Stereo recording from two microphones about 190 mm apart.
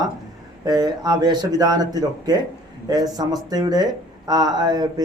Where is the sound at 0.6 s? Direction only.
20° right (ahead or behind).